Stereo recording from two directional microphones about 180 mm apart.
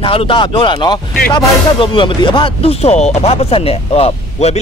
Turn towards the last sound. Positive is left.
turn(degrees=35)  # may be behind; listen again after turning